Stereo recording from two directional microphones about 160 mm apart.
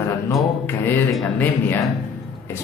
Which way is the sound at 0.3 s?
15° left (ahead or behind).